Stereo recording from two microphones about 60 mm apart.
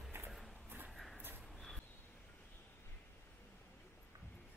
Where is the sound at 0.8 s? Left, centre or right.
Centre.